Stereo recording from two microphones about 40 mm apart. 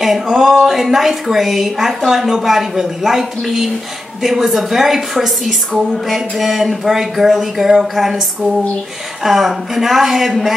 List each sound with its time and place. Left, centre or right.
0.0 s a woman's voice: centre
9.2 s a woman's voice: centre